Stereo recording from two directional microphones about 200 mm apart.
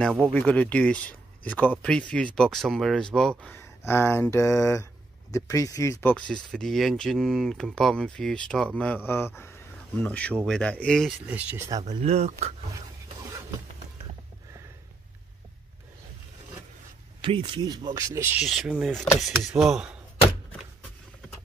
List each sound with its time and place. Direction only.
0.0 s speech: centre (ahead or behind)
11.9 s speech: 30° right (ahead or behind)
17.2 s speech: 25° right (ahead or behind)
18.4 s speech: centre (ahead or behind)